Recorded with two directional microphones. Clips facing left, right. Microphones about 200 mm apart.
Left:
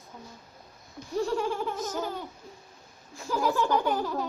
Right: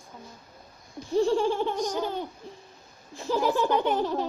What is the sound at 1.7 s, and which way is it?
Speech, 5° left (ahead or behind).